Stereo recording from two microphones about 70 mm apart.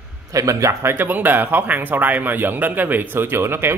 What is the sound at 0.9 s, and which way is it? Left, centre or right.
Speech, right.